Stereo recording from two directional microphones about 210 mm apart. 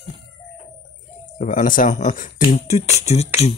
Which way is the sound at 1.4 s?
40° left (ahead or behind).